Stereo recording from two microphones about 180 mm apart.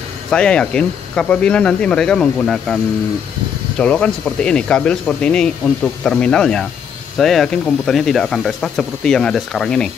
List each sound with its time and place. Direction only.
0.3 s speech: 5° left (ahead or behind)